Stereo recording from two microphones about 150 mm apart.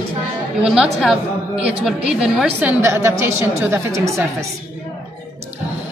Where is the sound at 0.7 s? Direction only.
5° right (ahead or behind).